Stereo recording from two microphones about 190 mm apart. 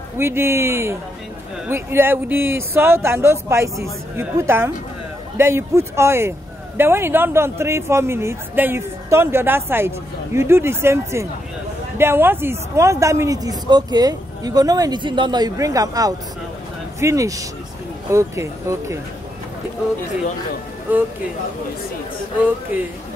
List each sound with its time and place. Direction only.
0.2 s speech: 15° right (ahead or behind)